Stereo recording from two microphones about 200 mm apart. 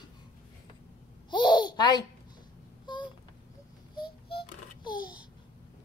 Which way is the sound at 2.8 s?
25° left (ahead or behind).